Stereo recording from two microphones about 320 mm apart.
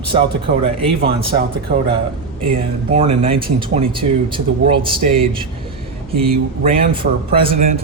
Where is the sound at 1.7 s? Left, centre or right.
Right.